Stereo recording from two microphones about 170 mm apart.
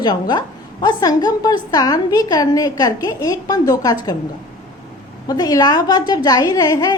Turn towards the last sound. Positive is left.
turn(degrees=20)  # may be behind; listen again after turning